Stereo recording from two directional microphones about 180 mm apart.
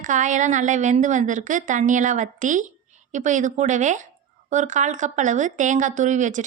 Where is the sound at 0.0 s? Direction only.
45° right (ahead or behind).